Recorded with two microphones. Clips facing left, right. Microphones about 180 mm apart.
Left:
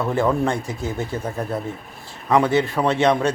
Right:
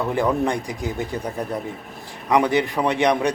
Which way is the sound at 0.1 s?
15° right (ahead or behind).